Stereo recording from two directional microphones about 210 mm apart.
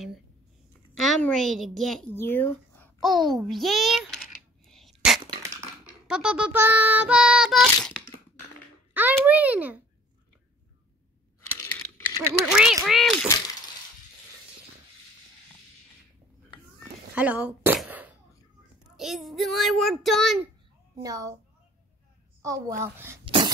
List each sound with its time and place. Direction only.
0.9 s child singing: centre (ahead or behind)
2.1 s babbling: 10° left (ahead or behind)
5.3 s a sound: 15° right (ahead or behind)
6.0 s child singing: 5° right (ahead or behind)
8.9 s a child's voice: 10° right (ahead or behind)
11.5 s a sound: 15° left (ahead or behind)
12.4 s child singing: 5° right (ahead or behind)
17.1 s a sound: 5° right (ahead or behind)
18.9 s child singing: centre (ahead or behind)
21.0 s a woman's voice: 15° right (ahead or behind)
22.4 s a woman's voice: 15° right (ahead or behind)
23.2 s cough: 25° right (ahead or behind)